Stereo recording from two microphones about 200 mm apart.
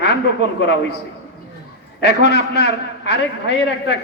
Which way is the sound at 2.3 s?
55° left (ahead or behind).